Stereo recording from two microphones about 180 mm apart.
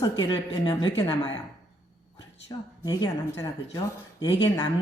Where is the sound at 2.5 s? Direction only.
25° left (ahead or behind).